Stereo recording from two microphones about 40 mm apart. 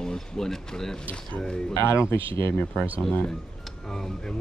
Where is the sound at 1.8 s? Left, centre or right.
Left.